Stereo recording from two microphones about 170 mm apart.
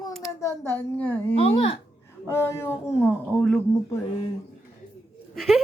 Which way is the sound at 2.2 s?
15° left (ahead or behind).